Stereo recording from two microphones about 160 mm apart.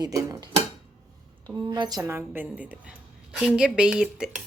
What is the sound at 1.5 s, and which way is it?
A woman's voice, 25° right (ahead or behind).